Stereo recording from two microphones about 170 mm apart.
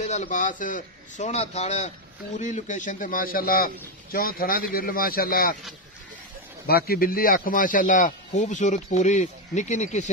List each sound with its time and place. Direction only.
0.0 s a man's voice: 45° left (ahead or behind); by 5.6 s 60° left (ahead or behind)
6.6 s a man's voice: 65° left (ahead or behind); by 10.0 s 45° left (ahead or behind)